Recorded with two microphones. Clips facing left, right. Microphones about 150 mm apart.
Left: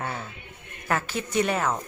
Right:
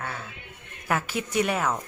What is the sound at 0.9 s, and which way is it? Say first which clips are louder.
Speech: even; 10° right (ahead or behind).